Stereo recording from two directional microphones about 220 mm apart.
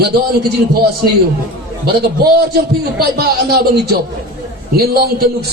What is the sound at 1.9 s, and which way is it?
A man's voice, 45° right (ahead or behind).